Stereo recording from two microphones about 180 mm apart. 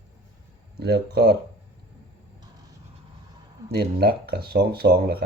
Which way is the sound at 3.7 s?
65° right (ahead or behind).